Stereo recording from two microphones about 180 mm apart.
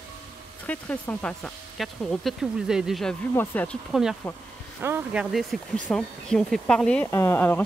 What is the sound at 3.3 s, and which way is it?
Speech, 10° left (ahead or behind).